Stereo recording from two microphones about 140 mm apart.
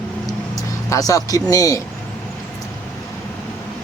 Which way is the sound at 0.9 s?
25° left (ahead or behind).